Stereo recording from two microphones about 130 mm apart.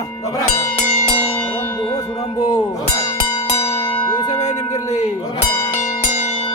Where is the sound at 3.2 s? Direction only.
50° left (ahead or behind).